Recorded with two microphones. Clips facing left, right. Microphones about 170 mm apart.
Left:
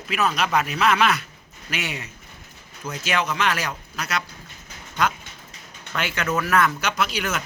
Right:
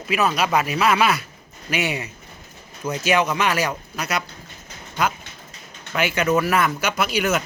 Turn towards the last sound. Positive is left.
turn(degrees=-5)  # may be behind; listen again after turning